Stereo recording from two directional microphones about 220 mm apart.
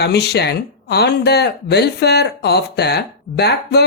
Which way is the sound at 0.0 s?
50° left (ahead or behind).